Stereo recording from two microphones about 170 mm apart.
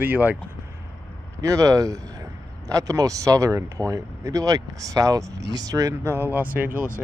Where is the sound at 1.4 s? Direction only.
20° right (ahead or behind).